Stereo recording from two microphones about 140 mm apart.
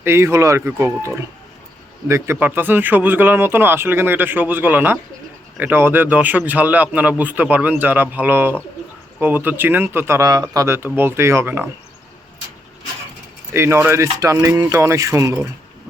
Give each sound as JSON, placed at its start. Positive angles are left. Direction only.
{"t": 0.0, "sound": "speech", "side_deg": -15}
{"t": 13.5, "sound": "speech", "side_deg": -15}